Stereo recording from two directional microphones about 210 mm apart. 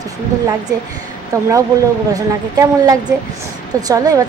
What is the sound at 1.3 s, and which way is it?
A woman's voice, 15° right (ahead or behind).